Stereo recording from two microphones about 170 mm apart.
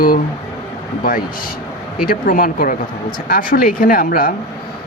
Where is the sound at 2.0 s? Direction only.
55° left (ahead or behind).